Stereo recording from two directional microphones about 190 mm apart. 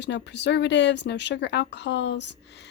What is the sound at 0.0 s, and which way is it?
A woman's voice, 65° left (ahead or behind).